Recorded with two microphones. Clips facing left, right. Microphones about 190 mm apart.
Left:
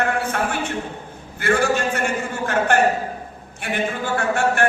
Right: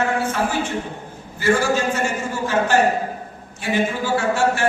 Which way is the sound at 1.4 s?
60° left (ahead or behind).